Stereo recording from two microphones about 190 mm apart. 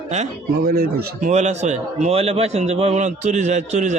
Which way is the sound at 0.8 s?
55° right (ahead or behind).